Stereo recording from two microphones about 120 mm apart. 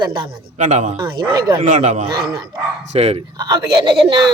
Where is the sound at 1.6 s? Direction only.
85° right.